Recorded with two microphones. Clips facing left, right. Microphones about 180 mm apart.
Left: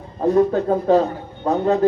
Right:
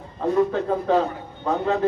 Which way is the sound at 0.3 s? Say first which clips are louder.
Left 4 dB; 40° left (ahead or behind).